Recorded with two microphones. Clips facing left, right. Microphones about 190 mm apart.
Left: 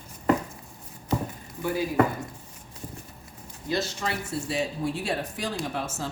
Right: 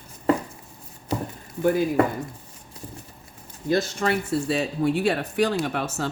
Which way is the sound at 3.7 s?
55° right (ahead or behind).